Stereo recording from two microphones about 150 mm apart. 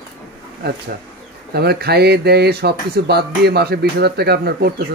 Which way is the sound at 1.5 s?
90° right.